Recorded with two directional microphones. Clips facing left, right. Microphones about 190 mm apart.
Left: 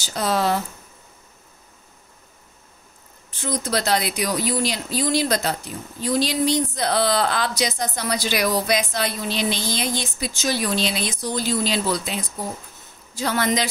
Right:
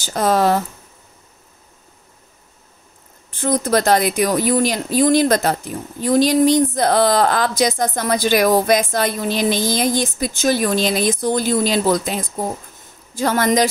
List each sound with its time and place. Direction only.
0.0 s speech: 50° right (ahead or behind)
3.3 s speech: 50° right (ahead or behind)